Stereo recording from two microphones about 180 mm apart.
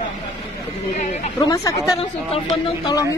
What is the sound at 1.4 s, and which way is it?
Speech, 20° left (ahead or behind).